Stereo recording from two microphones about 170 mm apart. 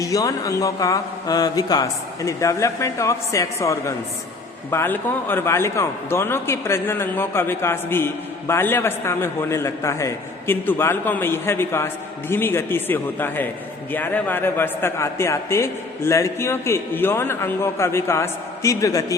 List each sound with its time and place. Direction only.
0.0 s a man's voice: 20° left (ahead or behind)